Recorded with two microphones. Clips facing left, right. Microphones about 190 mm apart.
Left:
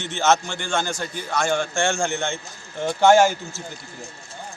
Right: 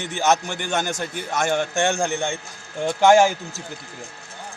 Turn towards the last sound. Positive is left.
turn(degrees=-15)  # may be behind; listen again after turning